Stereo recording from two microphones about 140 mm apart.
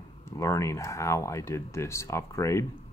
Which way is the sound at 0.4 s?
20° left (ahead or behind).